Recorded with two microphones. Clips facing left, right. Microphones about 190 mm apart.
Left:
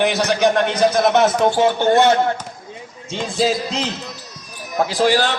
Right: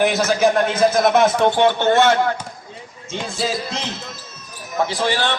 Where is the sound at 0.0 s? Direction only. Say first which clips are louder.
Even; centre (ahead or behind); by 2.3 s 15° left (ahead or behind).